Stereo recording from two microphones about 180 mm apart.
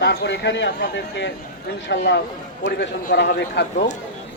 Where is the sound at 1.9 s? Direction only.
70° left (ahead or behind).